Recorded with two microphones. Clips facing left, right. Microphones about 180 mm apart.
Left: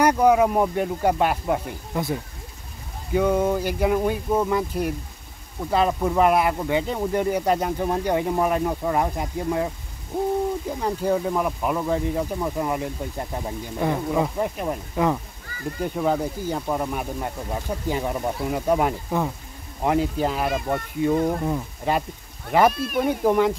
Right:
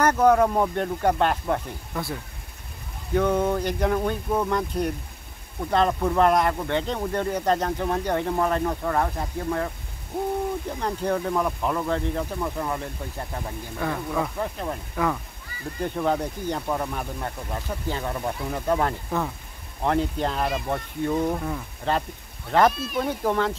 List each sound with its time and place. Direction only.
0.0 s speech: 10° left (ahead or behind)
3.2 s speech: 10° left (ahead or behind)
10.8 s speech: 10° left (ahead or behind)
15.8 s speech: 5° left (ahead or behind)